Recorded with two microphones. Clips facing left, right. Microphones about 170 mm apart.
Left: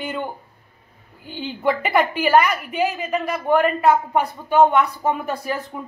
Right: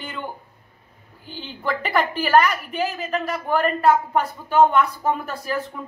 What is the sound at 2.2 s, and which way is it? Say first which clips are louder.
A woman's voice: right 1 dB; 15° left (ahead or behind).